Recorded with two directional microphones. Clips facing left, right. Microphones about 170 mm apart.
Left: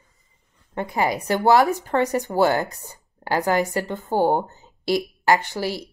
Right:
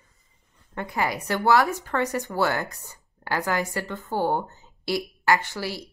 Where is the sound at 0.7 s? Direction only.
25° left (ahead or behind).